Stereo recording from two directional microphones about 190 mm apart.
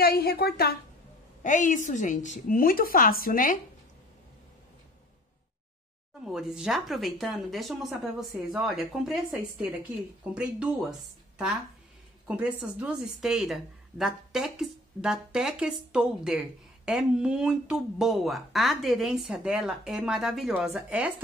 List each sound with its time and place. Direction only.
0.0 s a woman's voice: 55° left (ahead or behind)
1.4 s a woman's voice: 40° left (ahead or behind)
6.2 s a woman's voice: centre (ahead or behind)